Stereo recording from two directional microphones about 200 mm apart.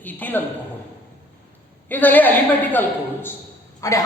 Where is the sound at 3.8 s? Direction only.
15° left (ahead or behind).